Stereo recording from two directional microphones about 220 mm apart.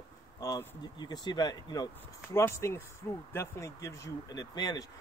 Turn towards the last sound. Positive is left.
turn(degrees=15)  # may be behind; listen again after turning